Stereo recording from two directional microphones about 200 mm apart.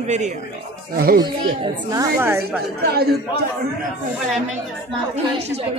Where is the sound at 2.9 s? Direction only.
50° right (ahead or behind).